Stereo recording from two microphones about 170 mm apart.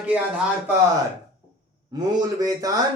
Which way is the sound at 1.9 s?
25° right (ahead or behind).